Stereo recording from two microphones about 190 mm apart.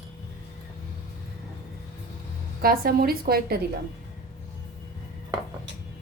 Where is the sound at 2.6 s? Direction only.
50° right (ahead or behind).